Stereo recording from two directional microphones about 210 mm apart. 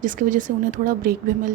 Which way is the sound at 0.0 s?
40° right (ahead or behind).